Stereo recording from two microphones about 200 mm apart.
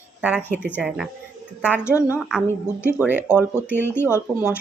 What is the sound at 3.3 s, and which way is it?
Speech, 10° left (ahead or behind).